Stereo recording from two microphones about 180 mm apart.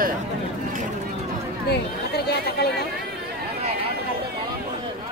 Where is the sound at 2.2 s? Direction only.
65° left (ahead or behind).